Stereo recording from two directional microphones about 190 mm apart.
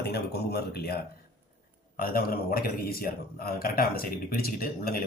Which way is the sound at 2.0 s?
50° left (ahead or behind).